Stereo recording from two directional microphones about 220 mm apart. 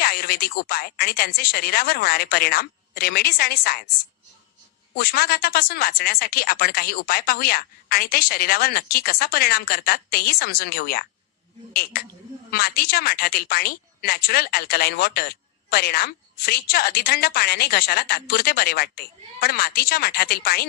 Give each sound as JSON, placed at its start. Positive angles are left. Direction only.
{"t": 0.0, "sound": "speech", "side_deg": 45}
{"t": 4.9, "sound": "speech", "side_deg": 45}